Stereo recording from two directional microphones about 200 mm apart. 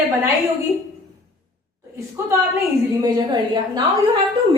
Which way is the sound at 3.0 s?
20° right (ahead or behind).